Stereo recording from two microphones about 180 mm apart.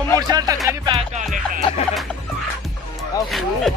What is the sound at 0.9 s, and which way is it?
Music, 40° right (ahead or behind).